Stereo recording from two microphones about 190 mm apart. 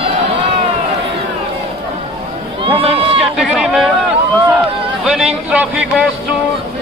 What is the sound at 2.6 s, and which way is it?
Run, 30° right (ahead or behind).